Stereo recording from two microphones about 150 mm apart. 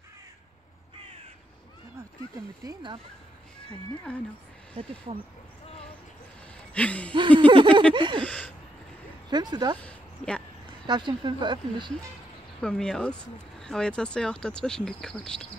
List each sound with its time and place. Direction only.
2.6 s speech: 30° right (ahead or behind)
3.6 s speech: 10° left (ahead or behind)
4.7 s speech: 40° right (ahead or behind)
6.7 s speech: 10° left (ahead or behind)
7.2 s speech: 35° right (ahead or behind)
8.2 s speech: 10° left (ahead or behind)
9.3 s speech: 30° right (ahead or behind)
9.8 s a sound: 5° left (ahead or behind)
10.9 s speech: 30° right (ahead or behind)
12.6 s speech: 5° left (ahead or behind)